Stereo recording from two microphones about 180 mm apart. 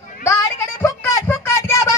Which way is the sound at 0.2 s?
15° left (ahead or behind).